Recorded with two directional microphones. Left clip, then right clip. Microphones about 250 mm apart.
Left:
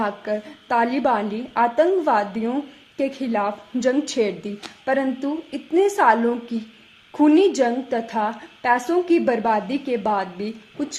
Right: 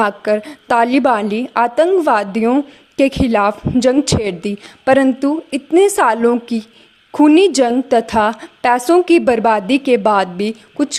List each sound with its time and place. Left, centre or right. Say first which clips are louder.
0.0 s a woman's voice: right 9 dB; right